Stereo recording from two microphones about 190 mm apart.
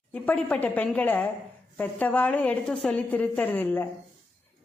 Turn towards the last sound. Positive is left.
turn(degrees=10)  # may be behind; listen again after turning